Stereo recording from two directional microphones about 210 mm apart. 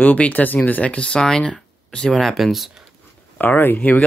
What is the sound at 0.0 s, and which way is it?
Speech, 5° left (ahead or behind).